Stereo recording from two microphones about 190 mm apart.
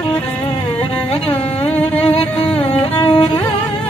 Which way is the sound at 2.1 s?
30° left (ahead or behind).